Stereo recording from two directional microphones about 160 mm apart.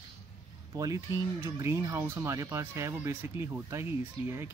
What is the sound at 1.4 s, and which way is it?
A man's voice, 15° right (ahead or behind).